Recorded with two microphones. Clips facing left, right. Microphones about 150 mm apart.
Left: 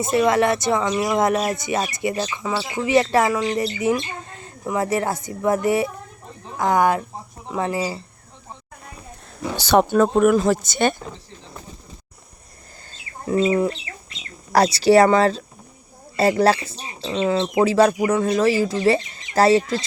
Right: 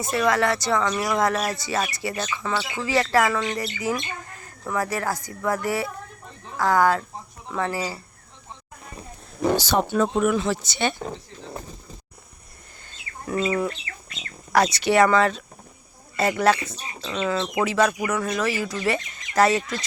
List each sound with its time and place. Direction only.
0.0 s speech: 25° left (ahead or behind)
9.6 s speech: 65° left (ahead or behind)
13.2 s speech: 25° left (ahead or behind)